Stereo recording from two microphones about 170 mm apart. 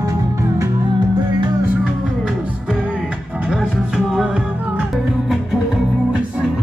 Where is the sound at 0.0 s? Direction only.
20° right (ahead or behind).